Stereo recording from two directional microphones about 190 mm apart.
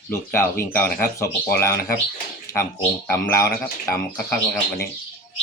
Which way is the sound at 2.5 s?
15° left (ahead or behind).